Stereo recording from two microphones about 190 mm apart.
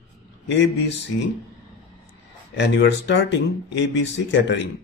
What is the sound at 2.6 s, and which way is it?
Speech, 65° left (ahead or behind).